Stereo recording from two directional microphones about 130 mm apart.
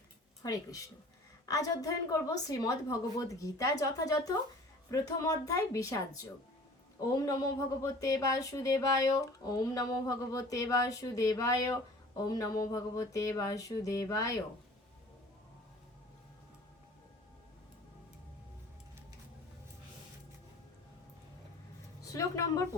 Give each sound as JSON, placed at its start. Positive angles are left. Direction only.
{"t": 0.4, "sound": "speech", "side_deg": 25}
{"t": 7.0, "sound": "speech", "side_deg": 25}
{"t": 22.0, "sound": "speech", "side_deg": 25}